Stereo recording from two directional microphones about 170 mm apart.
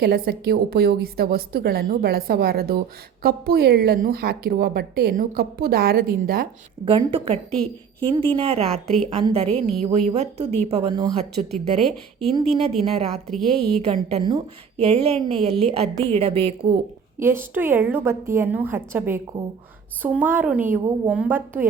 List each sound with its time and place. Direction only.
0.0 s a woman's voice: 65° right (ahead or behind)
6.8 s a woman's voice: 30° right (ahead or behind)
8.7 s speech: 5° left (ahead or behind)
9.0 s a woman's voice: 30° right (ahead or behind)
11.8 s speech: centre (ahead or behind)
12.8 s a woman's voice: 35° right (ahead or behind)
13.3 s speech: centre (ahead or behind)
13.8 s a woman's voice: 35° right (ahead or behind)
17.2 s a woman's voice: 15° right (ahead or behind)